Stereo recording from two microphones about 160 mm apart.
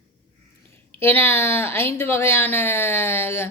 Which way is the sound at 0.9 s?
15° left (ahead or behind).